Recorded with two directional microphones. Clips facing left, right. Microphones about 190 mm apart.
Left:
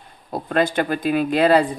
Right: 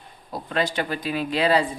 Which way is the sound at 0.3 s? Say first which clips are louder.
Left 5 dB; 50° left (ahead or behind).